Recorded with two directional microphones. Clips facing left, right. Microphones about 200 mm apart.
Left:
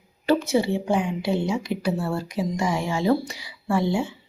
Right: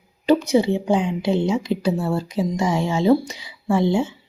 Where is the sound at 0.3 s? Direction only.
20° right (ahead or behind).